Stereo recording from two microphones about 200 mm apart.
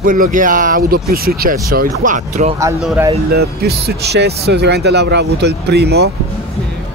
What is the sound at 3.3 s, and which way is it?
Speech, 50° right (ahead or behind).